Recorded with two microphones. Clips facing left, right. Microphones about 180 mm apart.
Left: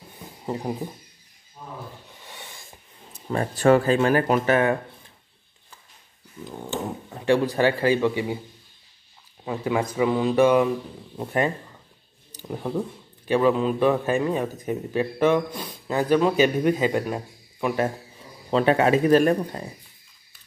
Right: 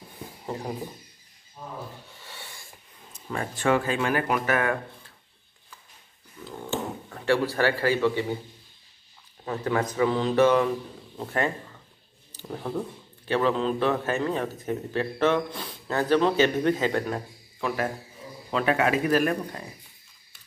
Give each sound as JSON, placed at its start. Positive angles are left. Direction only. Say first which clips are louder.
{"t": 2.1, "sound": "a sound", "louder": "left 2 dB", "side_deg": 15}
{"t": 3.1, "sound": "speech", "louder": "left 6 dB", "side_deg": 35}
{"t": 6.4, "sound": "speech", "louder": "left 1 dB", "side_deg": 15}
{"t": 9.4, "sound": "a man's voice", "louder": "left 2 dB", "side_deg": 10}
{"t": 18.5, "sound": "speech", "louder": "left 5 dB", "side_deg": 30}